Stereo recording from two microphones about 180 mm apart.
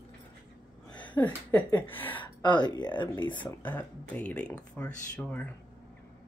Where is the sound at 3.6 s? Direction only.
10° left (ahead or behind).